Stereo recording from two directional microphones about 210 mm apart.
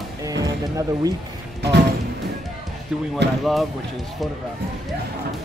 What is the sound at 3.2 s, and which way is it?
Speech, 55° right (ahead or behind).